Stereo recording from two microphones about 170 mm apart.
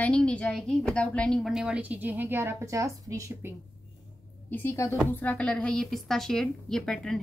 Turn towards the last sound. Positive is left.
turn(degrees=5)  # may be behind; listen again after turning